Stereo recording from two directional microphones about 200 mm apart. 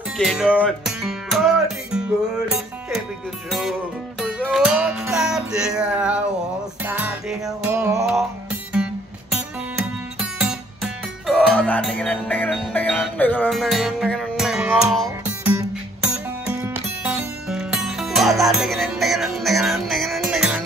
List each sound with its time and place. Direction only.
0.2 s music: 5° right (ahead or behind)